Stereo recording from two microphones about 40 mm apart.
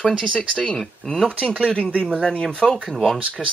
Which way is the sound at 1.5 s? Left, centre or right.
Left.